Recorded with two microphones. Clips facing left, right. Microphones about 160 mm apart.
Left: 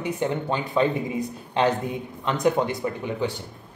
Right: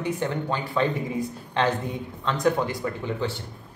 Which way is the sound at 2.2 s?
20° left (ahead or behind).